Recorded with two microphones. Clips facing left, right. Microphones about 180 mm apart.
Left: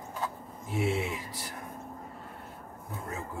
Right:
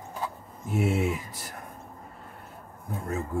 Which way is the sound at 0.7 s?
45° right (ahead or behind).